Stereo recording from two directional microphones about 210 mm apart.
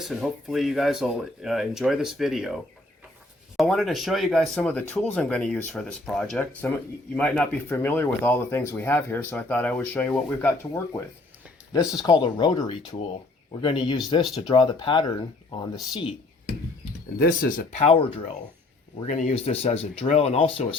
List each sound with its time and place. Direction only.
0.0 s speech: centre (ahead or behind)
3.6 s speech: centre (ahead or behind)
12.0 s speech: 20° left (ahead or behind)
17.2 s speech: 45° left (ahead or behind)